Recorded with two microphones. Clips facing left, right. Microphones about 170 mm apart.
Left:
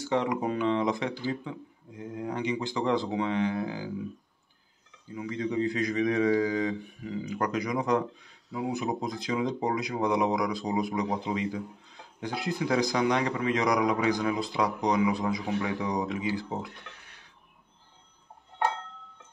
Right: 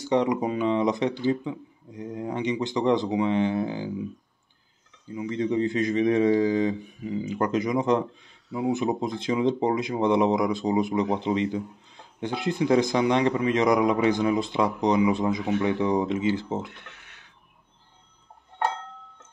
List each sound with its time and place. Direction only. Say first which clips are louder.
0.1 s a man's voice: right 5 dB; 20° right (ahead or behind)
5.1 s a man's voice: right 5 dB; 25° right (ahead or behind)